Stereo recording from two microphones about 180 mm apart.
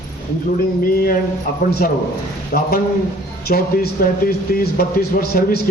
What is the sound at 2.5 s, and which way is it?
Speech, 60° left (ahead or behind).